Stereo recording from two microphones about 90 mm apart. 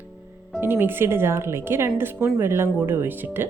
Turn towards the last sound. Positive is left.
turn(degrees=-25)  # may be behind; listen again after turning